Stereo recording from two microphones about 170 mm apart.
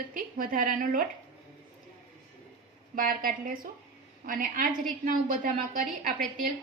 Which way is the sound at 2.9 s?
55° right (ahead or behind).